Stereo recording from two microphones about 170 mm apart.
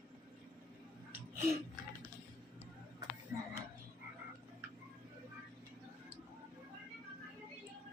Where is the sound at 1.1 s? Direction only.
15° right (ahead or behind).